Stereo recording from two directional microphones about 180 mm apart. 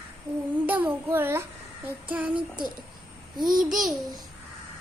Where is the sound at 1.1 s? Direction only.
15° right (ahead or behind).